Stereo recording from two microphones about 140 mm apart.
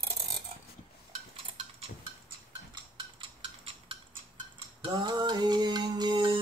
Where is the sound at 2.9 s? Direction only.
40° right (ahead or behind).